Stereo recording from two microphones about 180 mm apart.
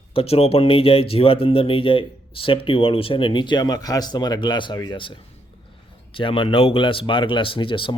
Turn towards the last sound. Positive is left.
turn(degrees=30)  # may be behind; listen again after turning